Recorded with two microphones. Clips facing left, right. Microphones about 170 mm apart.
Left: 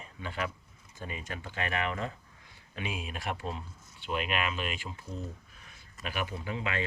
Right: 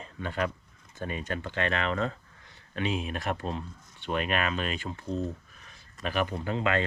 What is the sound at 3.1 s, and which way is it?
Speech, 45° right (ahead or behind).